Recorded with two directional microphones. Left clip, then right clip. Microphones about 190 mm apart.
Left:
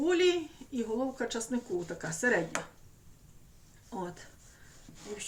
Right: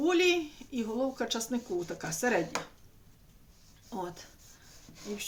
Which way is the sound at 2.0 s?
30° right (ahead or behind).